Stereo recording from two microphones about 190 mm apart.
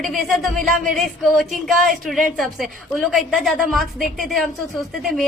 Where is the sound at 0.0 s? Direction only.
Centre (ahead or behind).